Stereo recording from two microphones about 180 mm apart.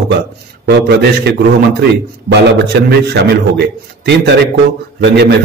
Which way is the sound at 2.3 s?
65° right (ahead or behind).